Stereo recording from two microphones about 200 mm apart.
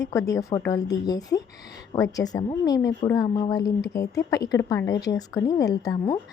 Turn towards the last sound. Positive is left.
turn(degrees=20)  # may be behind; listen again after turning